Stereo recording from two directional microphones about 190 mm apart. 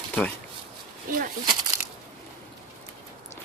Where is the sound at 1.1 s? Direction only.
45° right (ahead or behind).